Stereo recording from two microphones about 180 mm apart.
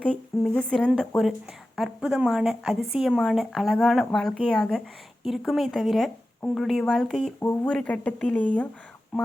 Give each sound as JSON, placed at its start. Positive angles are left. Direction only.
{"t": 0.0, "sound": "a woman's voice", "side_deg": 5}
{"t": 9.1, "sound": "speech", "side_deg": -5}